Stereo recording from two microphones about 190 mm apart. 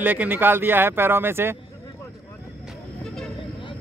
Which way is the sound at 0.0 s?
10° right (ahead or behind).